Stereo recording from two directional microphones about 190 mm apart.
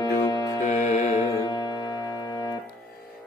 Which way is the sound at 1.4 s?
20° left (ahead or behind).